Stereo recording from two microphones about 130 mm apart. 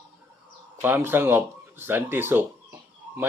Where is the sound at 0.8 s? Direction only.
15° right (ahead or behind).